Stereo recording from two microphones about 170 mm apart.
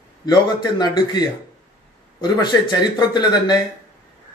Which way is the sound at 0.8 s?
25° left (ahead or behind).